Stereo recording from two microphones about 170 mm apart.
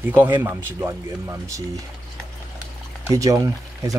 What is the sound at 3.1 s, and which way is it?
Speech, 20° right (ahead or behind).